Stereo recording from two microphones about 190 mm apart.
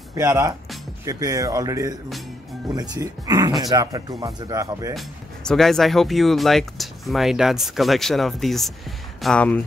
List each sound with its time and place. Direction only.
0.1 s speech: 15° right (ahead or behind)
4.9 s speech: centre (ahead or behind)